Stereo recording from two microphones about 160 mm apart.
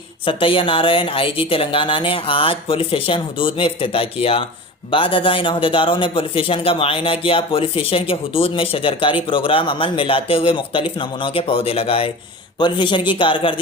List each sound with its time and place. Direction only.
0.3 s a man's voice: 35° left (ahead or behind)